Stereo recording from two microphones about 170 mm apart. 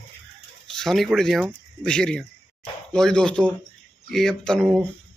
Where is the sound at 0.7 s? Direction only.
Centre (ahead or behind).